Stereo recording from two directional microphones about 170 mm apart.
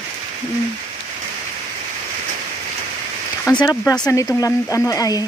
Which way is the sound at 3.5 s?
20° left (ahead or behind).